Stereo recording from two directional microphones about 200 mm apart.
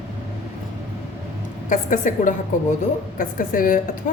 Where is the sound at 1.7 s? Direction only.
40° left (ahead or behind).